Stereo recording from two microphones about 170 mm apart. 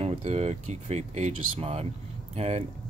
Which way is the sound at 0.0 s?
40° right (ahead or behind).